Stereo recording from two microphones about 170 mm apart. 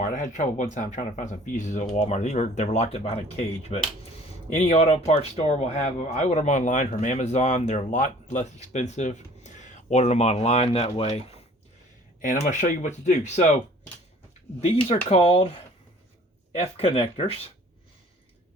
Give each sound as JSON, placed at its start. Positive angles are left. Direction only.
{"t": 0.1, "sound": "speech", "side_deg": 45}
{"t": 12.2, "sound": "speech", "side_deg": 50}
{"t": 14.8, "sound": "speech", "side_deg": 35}